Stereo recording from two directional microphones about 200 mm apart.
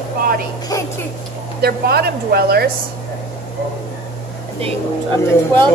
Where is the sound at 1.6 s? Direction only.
50° right (ahead or behind).